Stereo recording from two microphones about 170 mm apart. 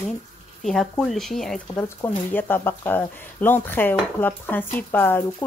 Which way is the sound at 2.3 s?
10° left (ahead or behind).